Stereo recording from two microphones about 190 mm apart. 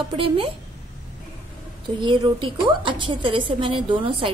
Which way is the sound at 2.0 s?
25° right (ahead or behind).